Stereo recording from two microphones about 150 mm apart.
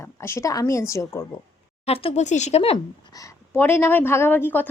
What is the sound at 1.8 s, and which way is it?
Speech, 40° left (ahead or behind).